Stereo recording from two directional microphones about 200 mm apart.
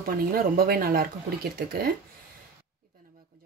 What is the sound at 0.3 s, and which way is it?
Speech, 50° right (ahead or behind).